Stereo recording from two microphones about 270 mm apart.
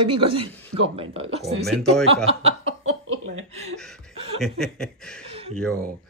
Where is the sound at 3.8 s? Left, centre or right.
Centre.